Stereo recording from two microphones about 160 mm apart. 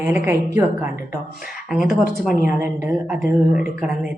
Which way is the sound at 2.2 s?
60° left (ahead or behind).